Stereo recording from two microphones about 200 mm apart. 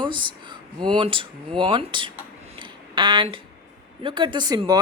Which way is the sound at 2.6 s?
25° right (ahead or behind).